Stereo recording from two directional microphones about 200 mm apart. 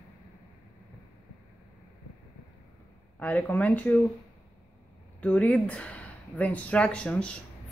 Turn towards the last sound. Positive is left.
turn(degrees=5)  # may be behind; listen again after turning